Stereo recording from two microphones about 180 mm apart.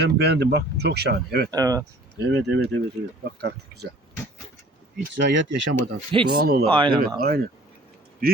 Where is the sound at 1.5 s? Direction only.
20° right (ahead or behind).